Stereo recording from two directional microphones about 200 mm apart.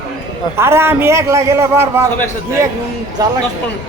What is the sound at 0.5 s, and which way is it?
A man's voice, 10° right (ahead or behind).